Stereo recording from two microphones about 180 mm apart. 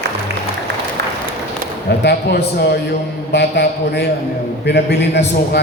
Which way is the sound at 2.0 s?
65° left (ahead or behind).